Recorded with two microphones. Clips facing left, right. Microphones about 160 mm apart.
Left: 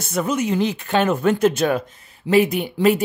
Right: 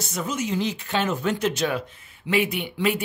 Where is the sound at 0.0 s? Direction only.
60° left (ahead or behind).